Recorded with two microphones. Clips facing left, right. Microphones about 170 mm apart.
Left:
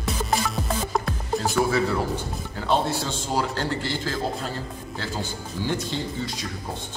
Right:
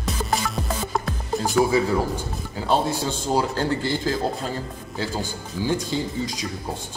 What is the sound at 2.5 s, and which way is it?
Music, 10° right (ahead or behind).